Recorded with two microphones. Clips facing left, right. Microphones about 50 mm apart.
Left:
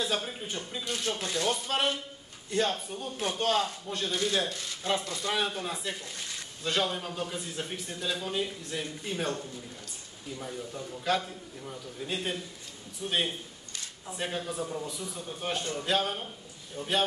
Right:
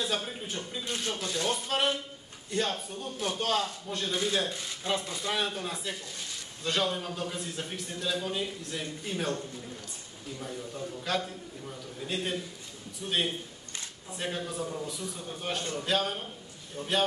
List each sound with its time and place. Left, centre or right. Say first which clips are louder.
0.0 s speech: left 1 dB; centre
0.8 s speech: left 2 dB; centre
1.1 s speech: left 1 dB; left
1.4 s a man's voice: even; centre
4.1 s speech: even; centre
5.3 s a man's voice: left 1 dB; centre
11.1 s a man's voice: left 4 dB; centre